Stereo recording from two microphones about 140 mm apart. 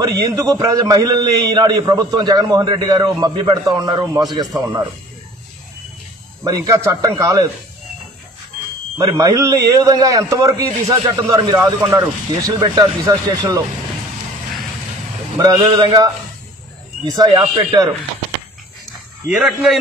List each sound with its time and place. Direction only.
0.0 s a man's voice: 25° right (ahead or behind)
6.4 s a man's voice: 25° right (ahead or behind)
8.9 s a man's voice: 25° right (ahead or behind)
15.3 s a man's voice: 25° right (ahead or behind)
19.2 s a man's voice: 5° right (ahead or behind)